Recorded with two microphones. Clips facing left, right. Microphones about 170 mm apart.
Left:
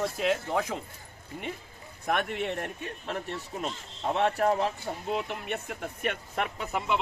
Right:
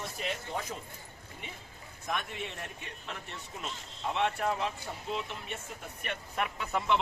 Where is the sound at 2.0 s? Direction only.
60° left (ahead or behind).